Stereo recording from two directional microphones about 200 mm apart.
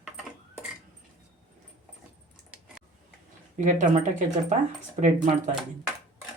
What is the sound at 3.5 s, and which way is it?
Speech, 40° right (ahead or behind).